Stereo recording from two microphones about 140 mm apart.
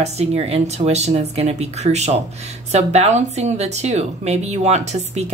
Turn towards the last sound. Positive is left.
turn(degrees=-50)  # may be behind; listen again after turning